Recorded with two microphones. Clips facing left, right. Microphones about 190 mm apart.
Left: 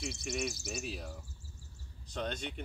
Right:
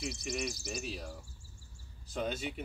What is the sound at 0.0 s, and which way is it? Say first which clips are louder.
Speech: even; centre (ahead or behind).